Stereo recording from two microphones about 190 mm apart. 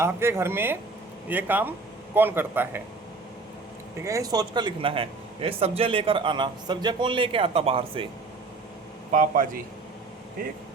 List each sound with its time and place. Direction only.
0.0 s speech: 15° right (ahead or behind)
4.0 s a man's voice: 20° right (ahead or behind)
9.1 s speech: 45° right (ahead or behind)